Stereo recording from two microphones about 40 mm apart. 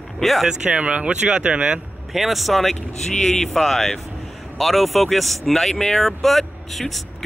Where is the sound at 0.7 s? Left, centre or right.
Right.